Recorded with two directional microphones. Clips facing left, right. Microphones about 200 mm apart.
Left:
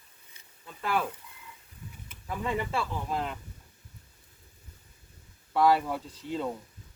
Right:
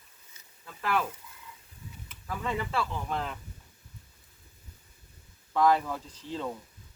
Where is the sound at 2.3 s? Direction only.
15° left (ahead or behind).